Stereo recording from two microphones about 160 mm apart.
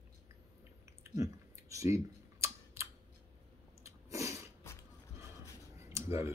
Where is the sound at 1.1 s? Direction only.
20° right (ahead or behind).